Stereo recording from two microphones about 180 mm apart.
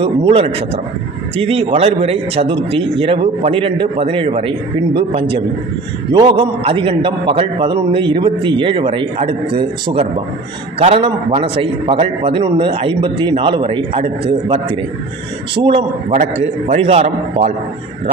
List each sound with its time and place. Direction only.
0.0 s a man's voice: 30° right (ahead or behind)
16.1 s a man's voice: 40° right (ahead or behind)